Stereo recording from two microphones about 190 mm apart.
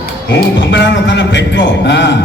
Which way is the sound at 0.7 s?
70° left (ahead or behind).